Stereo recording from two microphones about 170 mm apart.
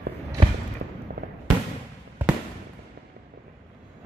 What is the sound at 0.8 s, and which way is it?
Fireworks, 75° right (ahead or behind).